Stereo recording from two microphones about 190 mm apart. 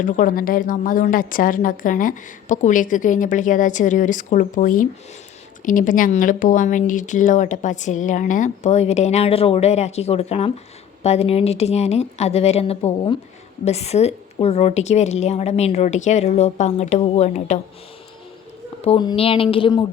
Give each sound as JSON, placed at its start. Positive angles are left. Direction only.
{"t": 0.0, "sound": "a woman's voice", "side_deg": 45}
{"t": 18.9, "sound": "speech", "side_deg": 25}